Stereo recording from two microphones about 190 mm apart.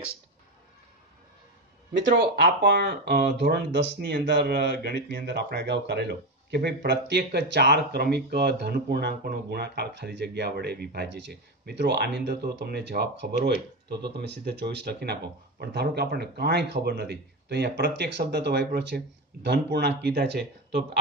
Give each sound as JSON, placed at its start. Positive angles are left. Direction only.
{"t": 2.0, "sound": "speech", "side_deg": -65}